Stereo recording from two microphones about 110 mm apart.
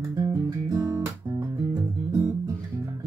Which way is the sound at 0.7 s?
30° right (ahead or behind).